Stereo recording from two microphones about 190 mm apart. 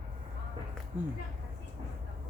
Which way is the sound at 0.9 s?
10° right (ahead or behind).